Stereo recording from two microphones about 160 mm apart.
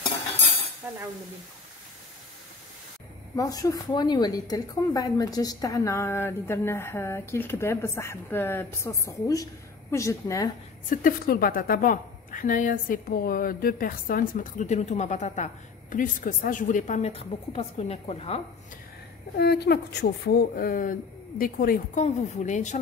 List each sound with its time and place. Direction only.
0.8 s stir: 10° right (ahead or behind)
3.3 s a woman's voice: 20° left (ahead or behind)
10.9 s a woman's voice: 60° left (ahead or behind); by 18.4 s 40° left (ahead or behind)
19.3 s speech: 85° left; by 22.0 s 65° left (ahead or behind)
22.0 s speech: 45° left (ahead or behind)